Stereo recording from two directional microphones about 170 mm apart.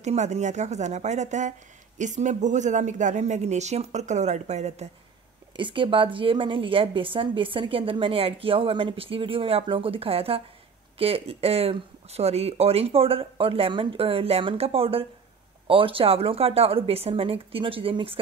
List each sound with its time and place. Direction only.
0.0 s speech: 40° right (ahead or behind)
5.6 s a woman's voice: 30° right (ahead or behind)